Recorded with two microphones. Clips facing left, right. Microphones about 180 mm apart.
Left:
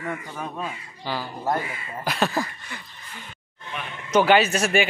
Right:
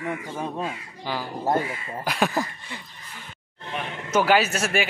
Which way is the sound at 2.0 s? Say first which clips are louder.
Even; 10° right (ahead or behind).